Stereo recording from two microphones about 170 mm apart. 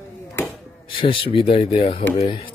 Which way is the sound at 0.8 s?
30° left (ahead or behind).